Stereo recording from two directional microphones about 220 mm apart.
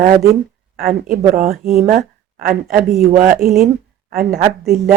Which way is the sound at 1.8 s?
35° right (ahead or behind).